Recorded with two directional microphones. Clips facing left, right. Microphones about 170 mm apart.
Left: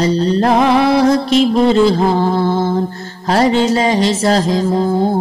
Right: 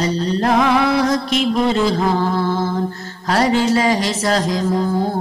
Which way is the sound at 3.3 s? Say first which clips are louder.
Left 3 dB; 25° left (ahead or behind).